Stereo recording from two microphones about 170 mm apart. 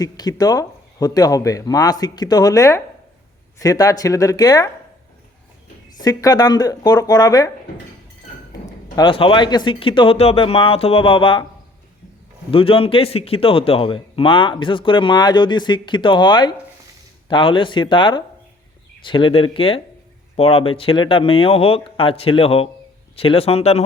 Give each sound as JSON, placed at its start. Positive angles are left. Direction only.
{"t": 0.0, "sound": "a man's voice", "side_deg": 20}
{"t": 6.0, "sound": "a man's voice", "side_deg": 20}
{"t": 9.0, "sound": "speech", "side_deg": 30}
{"t": 12.5, "sound": "a man's voice", "side_deg": 30}